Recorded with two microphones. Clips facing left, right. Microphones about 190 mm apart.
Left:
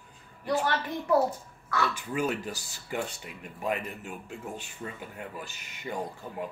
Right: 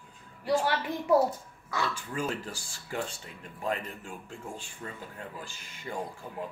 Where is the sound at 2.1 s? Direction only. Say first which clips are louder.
Left 3 dB; 20° left (ahead or behind).